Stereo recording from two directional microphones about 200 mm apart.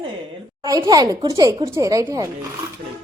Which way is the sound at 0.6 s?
20° right (ahead or behind).